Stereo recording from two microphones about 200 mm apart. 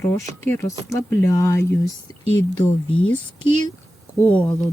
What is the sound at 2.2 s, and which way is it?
Speech, 80° left.